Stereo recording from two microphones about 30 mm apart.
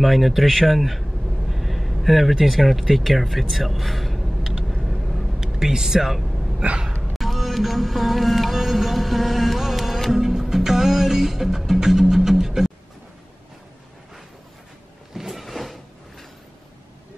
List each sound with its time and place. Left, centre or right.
0.0 s a man's voice: centre
5.0 s a sound: centre
5.6 s speech: centre
5.9 s speech: centre
7.2 s music: centre
10.1 s music: centre
15.1 s a sound: centre